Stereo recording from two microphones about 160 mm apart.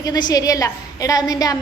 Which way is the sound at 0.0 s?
25° left (ahead or behind).